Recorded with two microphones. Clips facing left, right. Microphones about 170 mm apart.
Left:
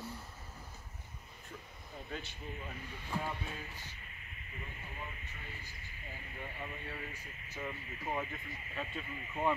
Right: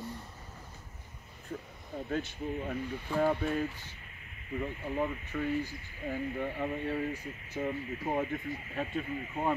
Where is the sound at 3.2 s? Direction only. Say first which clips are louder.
Right 13 dB; 60° right (ahead or behind).